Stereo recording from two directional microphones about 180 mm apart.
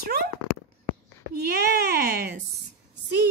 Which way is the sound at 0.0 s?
60° right (ahead or behind).